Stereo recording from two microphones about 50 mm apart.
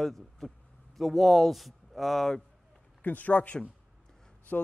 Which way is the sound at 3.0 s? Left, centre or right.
Left.